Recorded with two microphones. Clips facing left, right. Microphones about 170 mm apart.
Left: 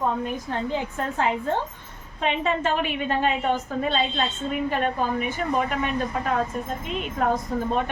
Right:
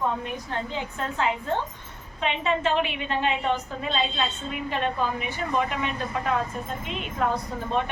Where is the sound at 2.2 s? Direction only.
45° left (ahead or behind).